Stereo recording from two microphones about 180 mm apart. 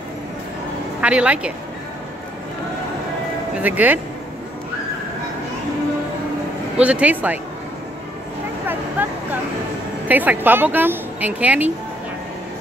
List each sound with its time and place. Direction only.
1.0 s speech: 5° right (ahead or behind)
3.5 s speech: 10° right (ahead or behind)
6.8 s speech: 5° right (ahead or behind)
8.6 s speech: 10° right (ahead or behind)